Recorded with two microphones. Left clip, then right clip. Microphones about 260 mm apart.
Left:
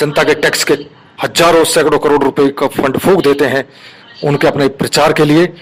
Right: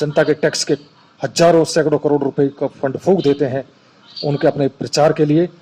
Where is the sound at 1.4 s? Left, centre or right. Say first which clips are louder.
Left 4 dB; left.